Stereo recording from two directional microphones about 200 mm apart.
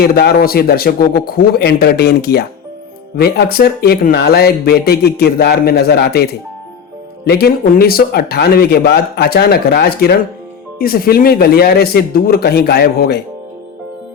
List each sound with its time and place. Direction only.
0.0 s speech: 50° left (ahead or behind)